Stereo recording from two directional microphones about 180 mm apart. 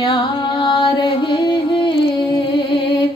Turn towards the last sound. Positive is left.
turn(degrees=30)  # may be behind; listen again after turning